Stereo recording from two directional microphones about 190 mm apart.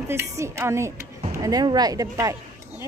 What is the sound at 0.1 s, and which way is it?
A woman's voice, 15° right (ahead or behind).